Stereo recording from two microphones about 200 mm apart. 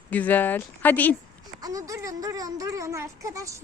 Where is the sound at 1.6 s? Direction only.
15° right (ahead or behind).